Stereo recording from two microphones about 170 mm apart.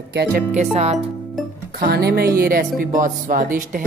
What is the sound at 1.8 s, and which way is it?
Speech, 70° right (ahead or behind).